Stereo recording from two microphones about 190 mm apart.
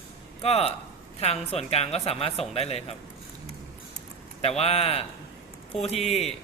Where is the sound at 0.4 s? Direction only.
30° left (ahead or behind).